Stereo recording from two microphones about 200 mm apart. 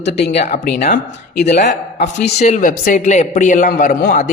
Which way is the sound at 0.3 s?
35° left (ahead or behind).